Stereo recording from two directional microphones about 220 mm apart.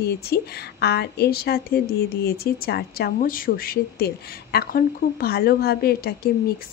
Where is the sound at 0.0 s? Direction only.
45° left (ahead or behind).